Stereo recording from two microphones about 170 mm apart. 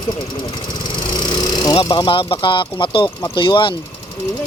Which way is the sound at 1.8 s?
30° left (ahead or behind).